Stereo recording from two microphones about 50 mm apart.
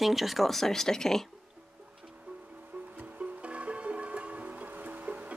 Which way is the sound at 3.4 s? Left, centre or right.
Right.